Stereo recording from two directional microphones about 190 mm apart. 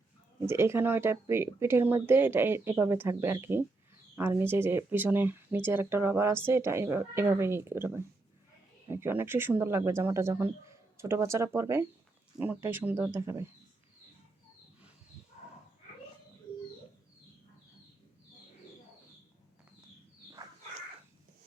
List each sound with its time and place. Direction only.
0.3 s speech: 15° right (ahead or behind)